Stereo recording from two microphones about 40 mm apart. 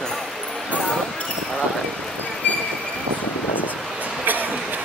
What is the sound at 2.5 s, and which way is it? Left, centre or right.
Train, left.